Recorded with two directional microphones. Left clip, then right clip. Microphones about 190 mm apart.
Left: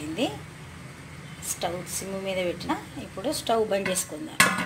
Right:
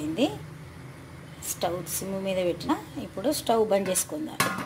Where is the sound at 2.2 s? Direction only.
15° right (ahead or behind).